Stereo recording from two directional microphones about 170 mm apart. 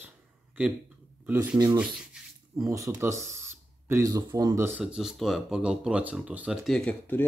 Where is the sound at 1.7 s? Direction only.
5° right (ahead or behind).